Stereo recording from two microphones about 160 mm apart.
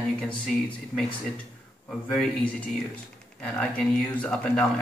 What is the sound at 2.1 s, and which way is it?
Speech, 5° left (ahead or behind).